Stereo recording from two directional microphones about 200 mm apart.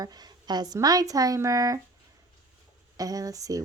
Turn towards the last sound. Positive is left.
turn(degrees=-15)  # may be behind; listen again after turning